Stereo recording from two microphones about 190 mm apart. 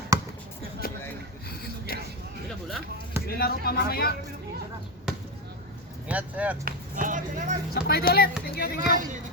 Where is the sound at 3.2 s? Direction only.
55° left (ahead or behind).